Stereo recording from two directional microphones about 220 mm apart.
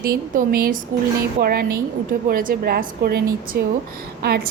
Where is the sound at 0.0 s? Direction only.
40° right (ahead or behind).